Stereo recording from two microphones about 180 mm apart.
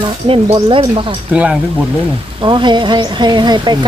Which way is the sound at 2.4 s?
25° right (ahead or behind).